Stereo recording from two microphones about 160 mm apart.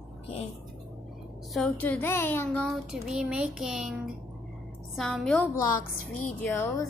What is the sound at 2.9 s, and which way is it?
Speech, 5° right (ahead or behind).